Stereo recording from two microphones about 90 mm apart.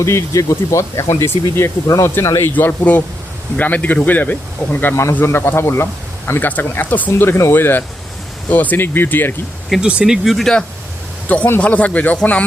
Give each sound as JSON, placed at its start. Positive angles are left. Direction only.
{"t": 0.0, "sound": "speech", "side_deg": 30}
{"t": 2.5, "sound": "a man's voice", "side_deg": 20}
{"t": 9.8, "sound": "speech", "side_deg": -5}
{"t": 11.3, "sound": "a man's voice", "side_deg": 20}